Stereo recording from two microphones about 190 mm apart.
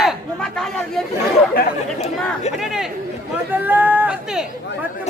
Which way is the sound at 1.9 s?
35° left (ahead or behind).